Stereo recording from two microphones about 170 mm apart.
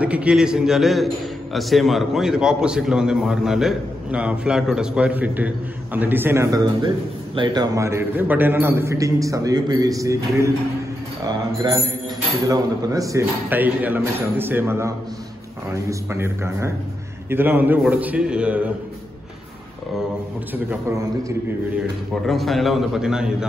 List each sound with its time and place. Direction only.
0.0 s a man's voice: 5° right (ahead or behind)
11.6 s a man's voice: 25° right (ahead or behind); by 18.7 s 5° right (ahead or behind)
22.2 s a man's voice: centre (ahead or behind)